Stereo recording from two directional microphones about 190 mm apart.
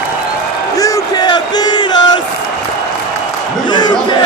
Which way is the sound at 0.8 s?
20° left (ahead or behind).